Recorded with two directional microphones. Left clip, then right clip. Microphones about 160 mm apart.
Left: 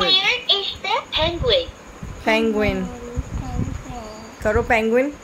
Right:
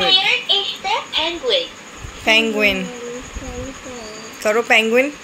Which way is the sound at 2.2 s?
30° left (ahead or behind).